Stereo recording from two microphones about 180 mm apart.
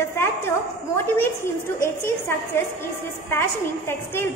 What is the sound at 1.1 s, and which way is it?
A woman's voice, 15° left (ahead or behind).